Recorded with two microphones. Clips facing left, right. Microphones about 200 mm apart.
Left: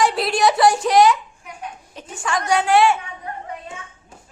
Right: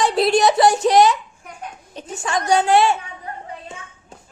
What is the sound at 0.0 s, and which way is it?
A child's voice, 20° right (ahead or behind).